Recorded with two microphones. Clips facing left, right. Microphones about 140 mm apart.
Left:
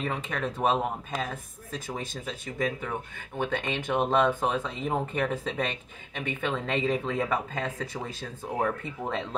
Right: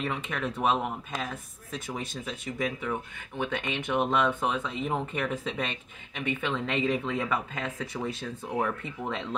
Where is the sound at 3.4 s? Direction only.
35° left (ahead or behind).